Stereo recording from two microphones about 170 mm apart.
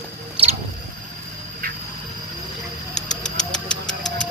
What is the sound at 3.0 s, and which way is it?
Vehicle, 45° left (ahead or behind).